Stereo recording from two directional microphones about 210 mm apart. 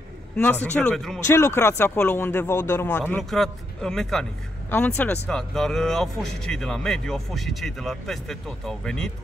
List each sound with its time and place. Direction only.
0.4 s speech: 10° left (ahead or behind)
1.2 s speech: 15° left (ahead or behind)